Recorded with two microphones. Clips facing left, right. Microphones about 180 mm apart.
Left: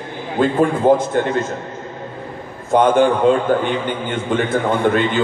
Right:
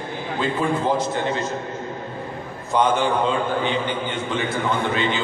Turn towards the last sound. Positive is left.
turn(degrees=50)  # may be behind; listen again after turning